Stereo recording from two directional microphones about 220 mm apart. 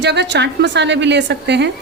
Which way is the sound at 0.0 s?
50° right (ahead or behind).